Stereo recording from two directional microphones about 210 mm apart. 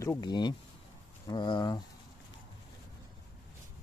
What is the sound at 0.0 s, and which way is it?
Speech, 15° left (ahead or behind).